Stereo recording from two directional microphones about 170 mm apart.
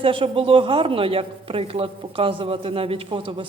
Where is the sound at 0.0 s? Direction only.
30° right (ahead or behind).